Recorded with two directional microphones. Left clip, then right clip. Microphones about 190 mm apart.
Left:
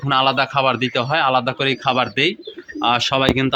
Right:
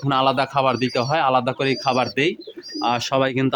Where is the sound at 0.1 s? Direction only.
5° right (ahead or behind).